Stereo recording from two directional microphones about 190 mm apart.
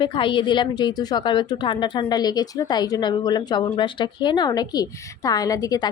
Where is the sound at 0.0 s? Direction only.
25° left (ahead or behind).